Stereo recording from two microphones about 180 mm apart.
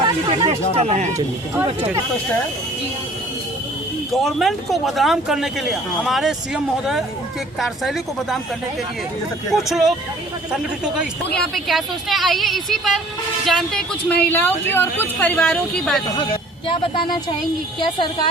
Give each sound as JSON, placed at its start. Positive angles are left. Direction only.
{"t": 0.3, "sound": "speech", "side_deg": -30}
{"t": 4.1, "sound": "speech", "side_deg": 0}
{"t": 9.5, "sound": "speech", "side_deg": 0}
{"t": 16.1, "sound": "a woman's voice", "side_deg": 30}